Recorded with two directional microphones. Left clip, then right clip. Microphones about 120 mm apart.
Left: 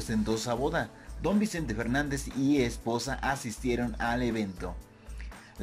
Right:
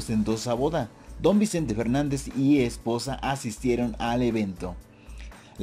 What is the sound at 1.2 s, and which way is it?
Speech, 30° right (ahead or behind).